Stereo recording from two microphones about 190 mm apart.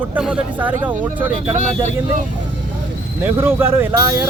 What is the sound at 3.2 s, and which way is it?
A man's voice, 10° right (ahead or behind).